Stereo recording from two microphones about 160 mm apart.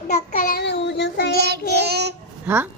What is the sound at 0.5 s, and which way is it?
Child singing, 90° left.